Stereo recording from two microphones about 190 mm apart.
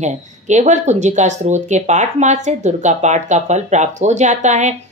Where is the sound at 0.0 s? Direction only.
40° right (ahead or behind).